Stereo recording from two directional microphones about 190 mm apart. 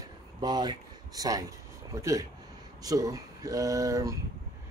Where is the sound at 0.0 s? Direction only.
20° right (ahead or behind).